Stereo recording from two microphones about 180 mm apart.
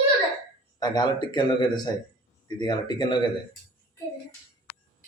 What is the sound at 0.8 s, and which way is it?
Speech, 25° left (ahead or behind).